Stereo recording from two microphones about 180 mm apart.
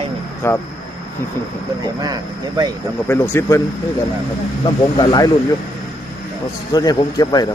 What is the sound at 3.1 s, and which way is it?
Speech, 15° left (ahead or behind).